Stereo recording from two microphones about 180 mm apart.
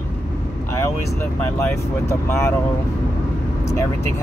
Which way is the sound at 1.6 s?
15° left (ahead or behind).